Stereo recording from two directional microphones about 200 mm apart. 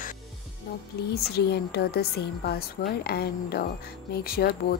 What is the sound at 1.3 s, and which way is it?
A woman's voice, 50° left (ahead or behind).